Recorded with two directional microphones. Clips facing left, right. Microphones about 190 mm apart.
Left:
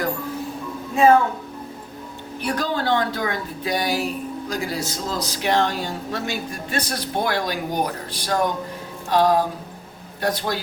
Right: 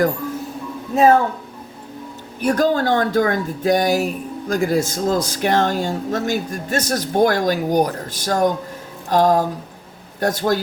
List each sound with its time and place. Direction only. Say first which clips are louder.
2.4 s speech: right 7 dB; 45° right (ahead or behind)
9.0 s music: right 2 dB; 45° right (ahead or behind)
10.2 s speech: right 5 dB; 45° right (ahead or behind)